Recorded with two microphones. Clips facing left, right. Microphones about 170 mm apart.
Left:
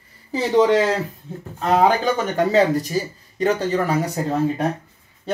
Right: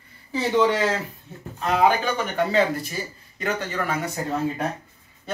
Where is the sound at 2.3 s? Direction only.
40° left (ahead or behind).